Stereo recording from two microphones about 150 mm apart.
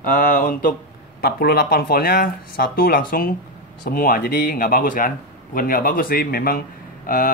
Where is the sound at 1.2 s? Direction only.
90° left.